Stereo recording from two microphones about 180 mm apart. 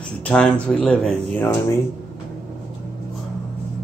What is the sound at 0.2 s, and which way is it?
A man's voice, 5° left (ahead or behind).